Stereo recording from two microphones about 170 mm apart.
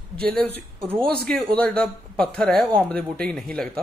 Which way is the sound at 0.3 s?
10° left (ahead or behind).